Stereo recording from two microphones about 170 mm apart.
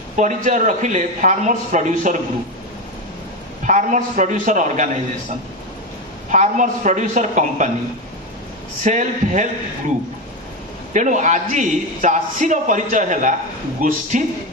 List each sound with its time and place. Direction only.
0.2 s a man's voice: 45° right (ahead or behind)
3.6 s a man's voice: 45° right (ahead or behind)
6.3 s a man's voice: 45° right (ahead or behind)
8.8 s a man's voice: 45° right (ahead or behind)
10.9 s a man's voice: 45° right (ahead or behind)